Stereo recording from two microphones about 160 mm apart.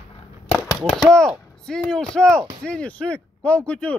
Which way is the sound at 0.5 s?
20° left (ahead or behind).